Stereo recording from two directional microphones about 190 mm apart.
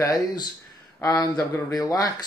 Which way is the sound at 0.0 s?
20° left (ahead or behind).